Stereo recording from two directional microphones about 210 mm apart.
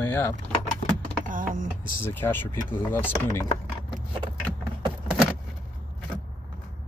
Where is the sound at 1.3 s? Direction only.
40° right (ahead or behind).